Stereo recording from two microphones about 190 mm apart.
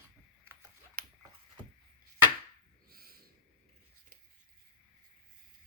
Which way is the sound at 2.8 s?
50° right (ahead or behind).